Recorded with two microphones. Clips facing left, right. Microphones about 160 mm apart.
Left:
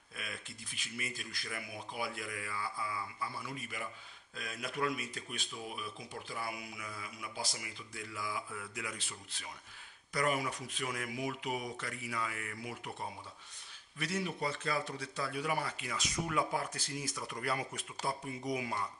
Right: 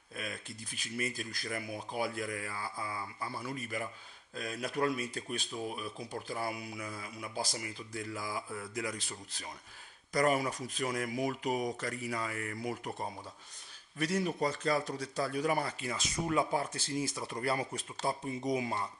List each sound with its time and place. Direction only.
0.1 s speech: 40° right (ahead or behind)
13.9 s speech: 40° right (ahead or behind)